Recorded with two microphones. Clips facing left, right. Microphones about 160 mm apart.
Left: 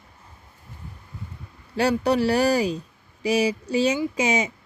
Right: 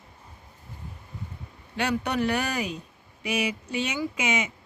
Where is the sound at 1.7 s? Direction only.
35° left (ahead or behind).